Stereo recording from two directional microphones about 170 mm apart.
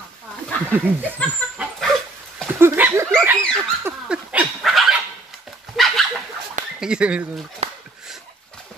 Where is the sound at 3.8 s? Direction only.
10° right (ahead or behind).